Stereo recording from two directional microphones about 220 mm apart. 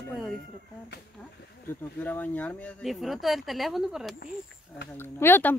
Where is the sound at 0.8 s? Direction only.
50° left (ahead or behind).